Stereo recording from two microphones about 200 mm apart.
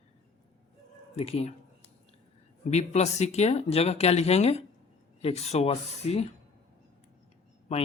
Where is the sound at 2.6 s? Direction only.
35° left (ahead or behind).